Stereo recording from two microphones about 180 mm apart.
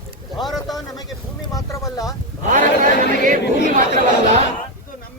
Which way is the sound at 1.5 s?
20° left (ahead or behind).